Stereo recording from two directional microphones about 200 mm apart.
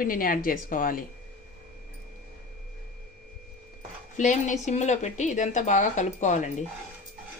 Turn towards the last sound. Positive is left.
turn(degrees=35)  # may be behind; listen again after turning